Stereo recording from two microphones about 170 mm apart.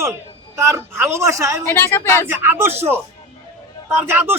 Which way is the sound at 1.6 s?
15° left (ahead or behind).